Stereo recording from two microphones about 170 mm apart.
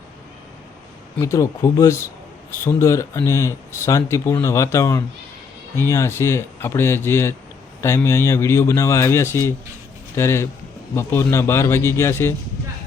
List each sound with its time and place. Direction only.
1.2 s speech: 20° left (ahead or behind)